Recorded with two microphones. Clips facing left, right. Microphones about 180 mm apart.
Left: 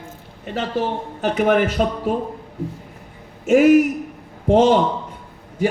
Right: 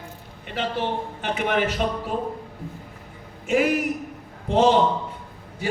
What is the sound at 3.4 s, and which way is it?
Speech, 45° left (ahead or behind).